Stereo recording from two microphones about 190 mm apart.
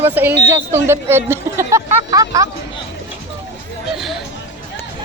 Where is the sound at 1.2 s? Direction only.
15° right (ahead or behind).